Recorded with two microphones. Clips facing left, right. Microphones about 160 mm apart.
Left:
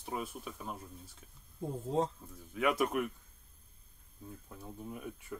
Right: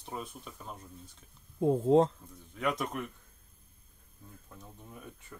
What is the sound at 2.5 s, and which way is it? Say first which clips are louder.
Speech: left 3 dB; 5° left (ahead or behind).